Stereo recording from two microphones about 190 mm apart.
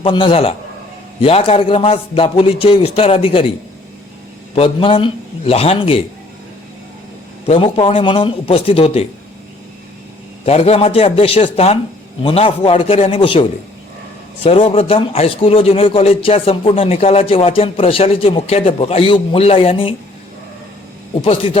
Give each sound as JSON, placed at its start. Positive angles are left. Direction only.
{"t": 0.0, "sound": "a man's voice", "side_deg": 25}
{"t": 4.5, "sound": "a man's voice", "side_deg": 30}
{"t": 7.4, "sound": "a man's voice", "side_deg": 30}
{"t": 10.4, "sound": "a man's voice", "side_deg": 35}
{"t": 21.2, "sound": "a man's voice", "side_deg": 30}